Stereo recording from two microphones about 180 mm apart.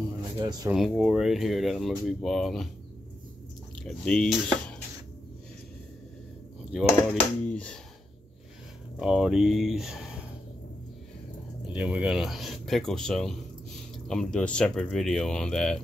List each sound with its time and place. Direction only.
0.4 s speech: 20° right (ahead or behind)
0.7 s speech: centre (ahead or behind)
3.8 s speech: 5° left (ahead or behind)
6.7 s speech: centre (ahead or behind)
9.0 s speech: 5° right (ahead or behind)
11.7 s speech: 5° right (ahead or behind)